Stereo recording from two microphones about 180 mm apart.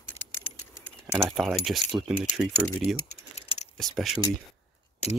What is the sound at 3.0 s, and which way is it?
Typing, 35° left (ahead or behind).